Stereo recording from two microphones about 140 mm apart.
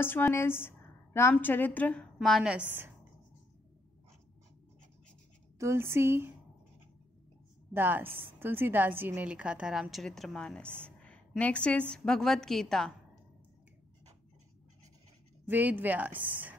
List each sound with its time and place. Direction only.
0.0 s a woman's voice: 15° left (ahead or behind)
2.1 s a woman's voice: centre (ahead or behind)
5.6 s speech: 20° right (ahead or behind)
7.7 s a woman's voice: 15° right (ahead or behind); by 12.9 s centre (ahead or behind)
15.4 s speech: 15° right (ahead or behind)